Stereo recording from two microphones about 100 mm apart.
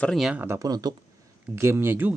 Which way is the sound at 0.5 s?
40° right (ahead or behind).